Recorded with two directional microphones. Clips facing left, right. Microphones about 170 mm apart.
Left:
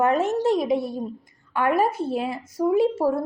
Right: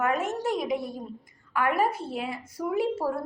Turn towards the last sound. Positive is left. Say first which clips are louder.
# left 7 dB
turn(degrees=25)  # may be behind; listen again after turning